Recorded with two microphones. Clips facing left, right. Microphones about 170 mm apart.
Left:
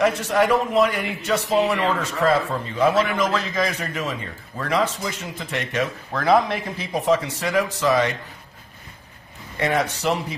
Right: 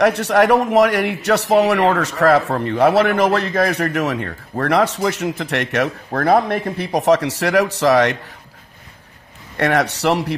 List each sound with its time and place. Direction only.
0.0 s a man's voice: 70° right (ahead or behind)
9.6 s a man's voice: 75° right (ahead or behind)